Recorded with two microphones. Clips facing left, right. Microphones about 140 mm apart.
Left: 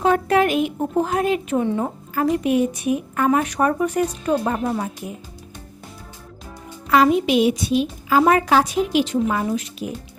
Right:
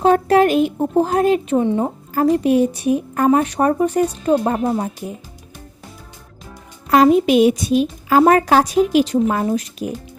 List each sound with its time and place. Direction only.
0.0 s a sound: 35° right (ahead or behind)
1.2 s a woman's voice: 30° right (ahead or behind)
1.6 s speech: 20° right (ahead or behind)
2.1 s a woman's voice: 30° right (ahead or behind)
6.9 s a woman's voice: 40° right (ahead or behind)